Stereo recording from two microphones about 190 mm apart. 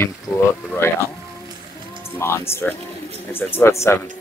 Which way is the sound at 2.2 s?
15° left (ahead or behind).